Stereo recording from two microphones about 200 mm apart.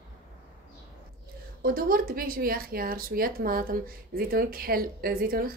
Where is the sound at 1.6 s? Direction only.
45° right (ahead or behind).